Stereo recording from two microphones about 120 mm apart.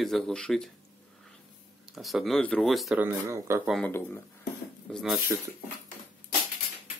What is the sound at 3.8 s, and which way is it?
Speech, 15° left (ahead or behind).